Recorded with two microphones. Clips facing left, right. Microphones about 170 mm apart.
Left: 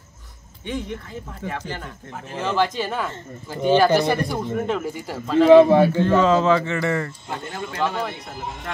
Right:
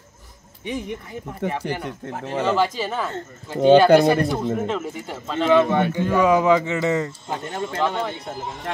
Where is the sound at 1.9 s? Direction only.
70° right (ahead or behind).